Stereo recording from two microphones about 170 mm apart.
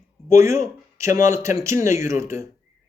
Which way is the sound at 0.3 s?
15° right (ahead or behind).